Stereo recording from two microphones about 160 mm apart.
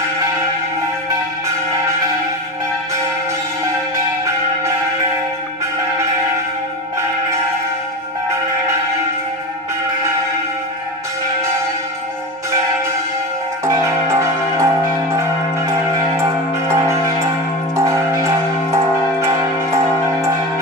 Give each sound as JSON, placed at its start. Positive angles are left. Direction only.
{"t": 13.7, "sound": "music", "side_deg": -20}
{"t": 16.2, "sound": "music", "side_deg": -20}